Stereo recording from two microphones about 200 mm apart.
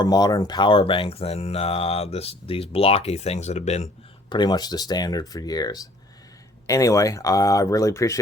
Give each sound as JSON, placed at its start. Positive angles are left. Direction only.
{"t": 0.0, "sound": "speech", "side_deg": 20}
{"t": 4.3, "sound": "speech", "side_deg": 20}